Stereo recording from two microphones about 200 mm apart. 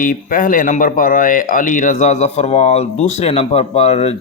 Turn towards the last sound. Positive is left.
turn(degrees=30)  # may be behind; listen again after turning